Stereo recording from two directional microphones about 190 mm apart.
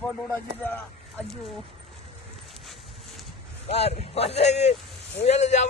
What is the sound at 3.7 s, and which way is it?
A man's voice, 35° left (ahead or behind).